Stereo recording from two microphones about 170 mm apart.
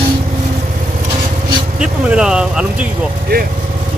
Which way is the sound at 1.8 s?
5° right (ahead or behind).